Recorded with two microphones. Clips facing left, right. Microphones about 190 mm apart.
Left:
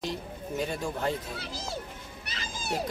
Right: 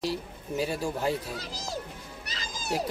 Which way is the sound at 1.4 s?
40° right (ahead or behind).